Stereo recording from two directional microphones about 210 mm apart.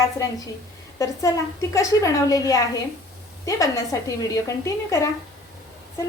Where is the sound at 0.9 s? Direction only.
15° left (ahead or behind).